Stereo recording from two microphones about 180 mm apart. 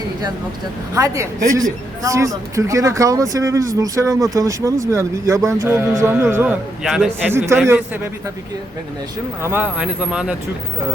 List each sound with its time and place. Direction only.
0.9 s a man's voice: 15° right (ahead or behind)
6.8 s speech: centre (ahead or behind)
7.3 s a man's voice: 15° right (ahead or behind)
9.4 s speech: 10° right (ahead or behind)